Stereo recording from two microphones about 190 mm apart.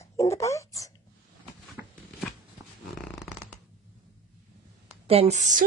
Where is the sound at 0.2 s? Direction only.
15° left (ahead or behind).